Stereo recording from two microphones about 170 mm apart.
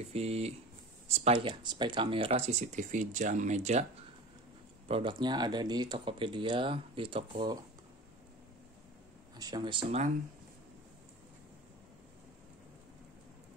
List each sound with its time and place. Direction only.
0.0 s speech: 35° right (ahead or behind)
4.8 s speech: 30° right (ahead or behind)
9.4 s speech: 25° right (ahead or behind)